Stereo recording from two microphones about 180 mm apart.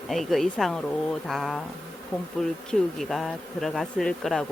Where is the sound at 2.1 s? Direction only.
15° left (ahead or behind).